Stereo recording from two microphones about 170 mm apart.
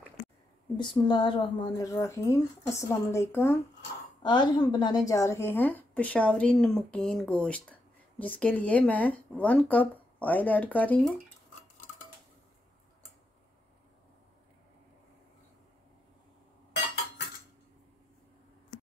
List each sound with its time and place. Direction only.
0.7 s speech: 25° left (ahead or behind)
1.7 s a woman's voice: 20° left (ahead or behind)
4.2 s a woman's voice: 25° left (ahead or behind); by 11.1 s 10° left (ahead or behind)